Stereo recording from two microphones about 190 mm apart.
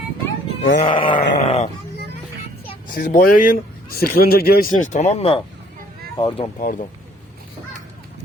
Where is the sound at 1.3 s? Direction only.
35° left (ahead or behind).